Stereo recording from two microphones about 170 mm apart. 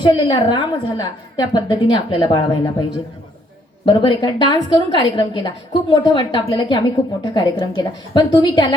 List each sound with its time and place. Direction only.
0.0 s a woman's voice: 25° left (ahead or behind)